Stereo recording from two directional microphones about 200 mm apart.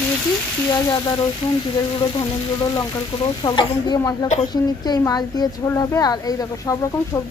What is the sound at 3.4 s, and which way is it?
A woman's voice, 20° left (ahead or behind).